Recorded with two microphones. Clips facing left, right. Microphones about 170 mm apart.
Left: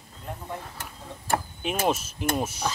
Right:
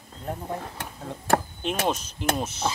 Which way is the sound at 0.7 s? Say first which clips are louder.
Right 5 dB; 70° right (ahead or behind).